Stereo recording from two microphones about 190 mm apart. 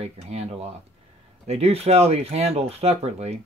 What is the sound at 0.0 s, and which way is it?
Speech, 35° right (ahead or behind).